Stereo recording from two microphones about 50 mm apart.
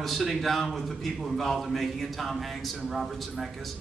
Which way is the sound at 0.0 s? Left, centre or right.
Centre.